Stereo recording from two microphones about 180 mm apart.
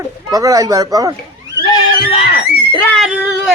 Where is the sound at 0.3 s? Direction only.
20° right (ahead or behind).